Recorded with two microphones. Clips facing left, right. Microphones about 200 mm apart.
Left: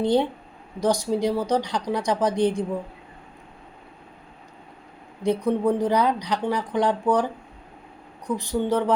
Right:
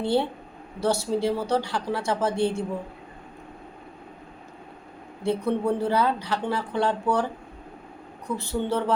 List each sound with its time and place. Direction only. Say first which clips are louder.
0.0 s speech: left 3 dB; 15° left (ahead or behind)
5.2 s speech: left 3 dB; 15° left (ahead or behind)
8.3 s speech: left 3 dB; 15° left (ahead or behind)